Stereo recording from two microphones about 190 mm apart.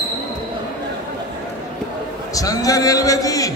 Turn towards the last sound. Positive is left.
turn(degrees=20)  # may be behind; listen again after turning